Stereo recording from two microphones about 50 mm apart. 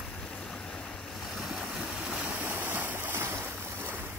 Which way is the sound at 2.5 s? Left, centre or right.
Right.